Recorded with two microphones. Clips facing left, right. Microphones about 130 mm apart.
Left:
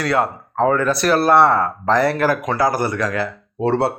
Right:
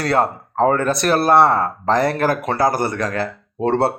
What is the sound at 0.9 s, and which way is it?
Speech, 20° right (ahead or behind).